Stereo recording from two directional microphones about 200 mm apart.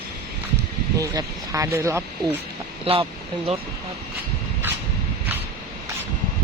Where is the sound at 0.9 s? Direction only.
15° right (ahead or behind).